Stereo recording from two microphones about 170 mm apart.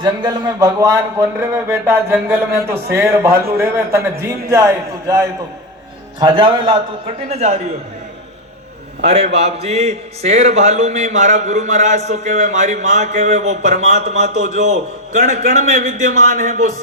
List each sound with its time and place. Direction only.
0.0 s a man's voice: 25° right (ahead or behind)
7.3 s a man's voice: 40° right (ahead or behind)
9.0 s a man's voice: 45° right (ahead or behind)